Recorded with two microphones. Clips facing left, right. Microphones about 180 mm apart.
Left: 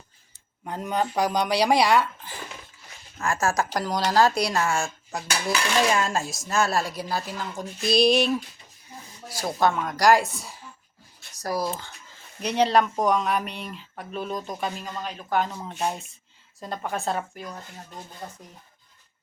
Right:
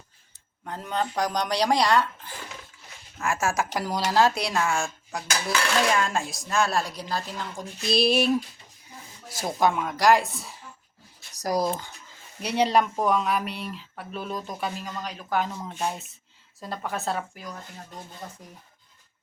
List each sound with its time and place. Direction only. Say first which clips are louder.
0.6 s speech: left 2 dB; 15° left (ahead or behind)
3.2 s a woman's voice: left 1 dB; 5° right (ahead or behind)
9.6 s a woman's voice: even; 10° right (ahead or behind)
11.4 s speech: right 2 dB; 20° right (ahead or behind)
12.4 s a woman's voice: left 1 dB; 10° right (ahead or behind)
15.4 s speech: left 1 dB; 10° left (ahead or behind)
15.9 s a woman's voice: left 2 dB; 5° right (ahead or behind)